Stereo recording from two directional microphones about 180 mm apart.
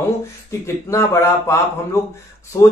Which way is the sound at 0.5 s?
15° left (ahead or behind).